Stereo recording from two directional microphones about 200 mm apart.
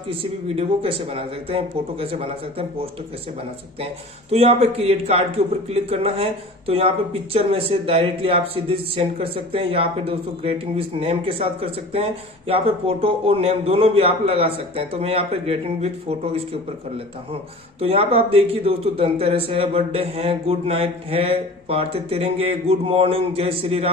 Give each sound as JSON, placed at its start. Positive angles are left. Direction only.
{"t": 0.1, "sound": "speech", "side_deg": -30}
{"t": 3.8, "sound": "speech", "side_deg": -30}